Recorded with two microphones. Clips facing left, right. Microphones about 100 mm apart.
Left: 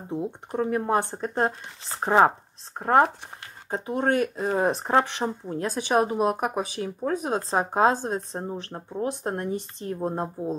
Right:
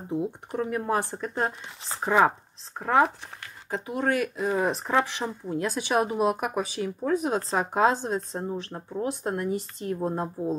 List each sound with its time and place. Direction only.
0.5 s speech: 35° left (ahead or behind)
2.8 s speech: 50° left (ahead or behind)
3.7 s speech: 35° left (ahead or behind)
7.5 s speech: 30° left (ahead or behind)
7.9 s speech: 45° left (ahead or behind)
9.0 s speech: 30° left (ahead or behind)